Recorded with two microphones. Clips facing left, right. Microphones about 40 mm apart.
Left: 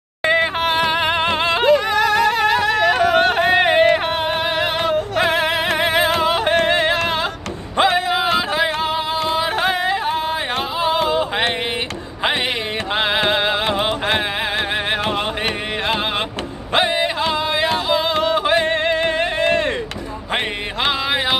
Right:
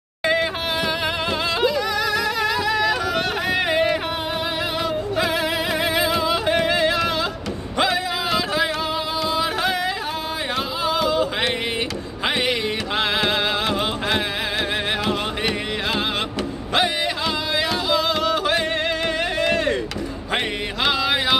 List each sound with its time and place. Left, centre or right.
0.2 s yodeling: left
4.8 s music: left
10.8 s a sound: left
12.9 s music: left
20.8 s mantra: left